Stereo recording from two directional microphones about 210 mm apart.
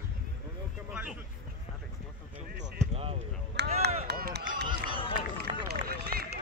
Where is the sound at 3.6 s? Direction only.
50° right (ahead or behind).